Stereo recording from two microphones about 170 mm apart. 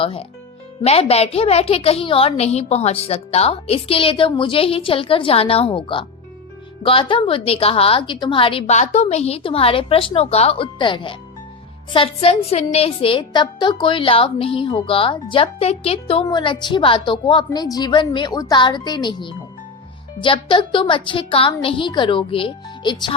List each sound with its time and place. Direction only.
0.0 s a woman's voice: 35° left (ahead or behind)